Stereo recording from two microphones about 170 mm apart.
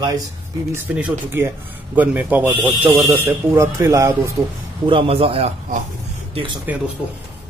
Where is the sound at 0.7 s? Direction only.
10° right (ahead or behind).